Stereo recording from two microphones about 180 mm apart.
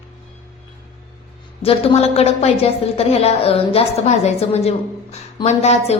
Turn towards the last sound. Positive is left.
turn(degrees=35)  # may be behind; listen again after turning